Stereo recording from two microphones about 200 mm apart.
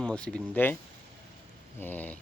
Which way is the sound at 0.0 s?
5° left (ahead or behind).